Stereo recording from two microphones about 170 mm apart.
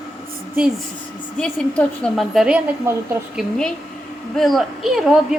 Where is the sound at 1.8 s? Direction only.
5° left (ahead or behind).